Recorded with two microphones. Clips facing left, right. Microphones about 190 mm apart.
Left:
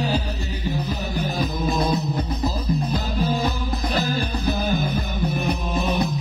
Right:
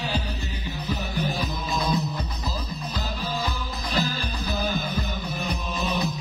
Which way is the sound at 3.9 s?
50° left (ahead or behind).